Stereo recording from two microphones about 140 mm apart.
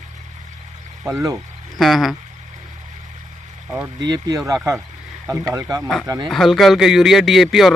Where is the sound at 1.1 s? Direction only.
20° right (ahead or behind).